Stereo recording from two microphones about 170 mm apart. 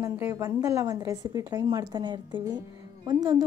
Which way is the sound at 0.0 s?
15° right (ahead or behind).